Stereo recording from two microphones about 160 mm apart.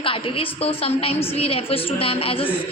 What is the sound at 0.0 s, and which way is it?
A woman's voice, 35° left (ahead or behind).